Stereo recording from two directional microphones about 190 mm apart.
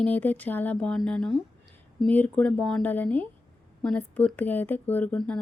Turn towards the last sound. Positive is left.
turn(degrees=5)  # may be behind; listen again after turning